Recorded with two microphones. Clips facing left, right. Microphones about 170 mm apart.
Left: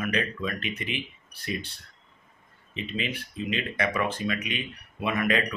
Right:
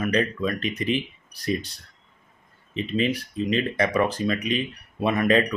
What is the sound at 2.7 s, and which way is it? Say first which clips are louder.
Speech: right 8 dB; 40° right (ahead or behind).